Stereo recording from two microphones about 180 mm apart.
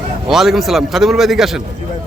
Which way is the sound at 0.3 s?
Centre (ahead or behind).